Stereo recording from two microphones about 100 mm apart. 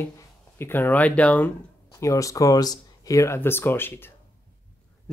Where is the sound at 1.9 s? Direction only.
30° left (ahead or behind).